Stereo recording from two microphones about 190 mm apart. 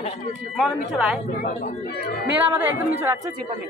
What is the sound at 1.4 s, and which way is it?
Speech, 50° left (ahead or behind).